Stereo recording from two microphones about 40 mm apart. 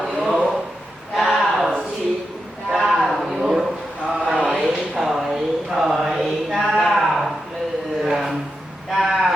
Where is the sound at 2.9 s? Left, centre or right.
Centre.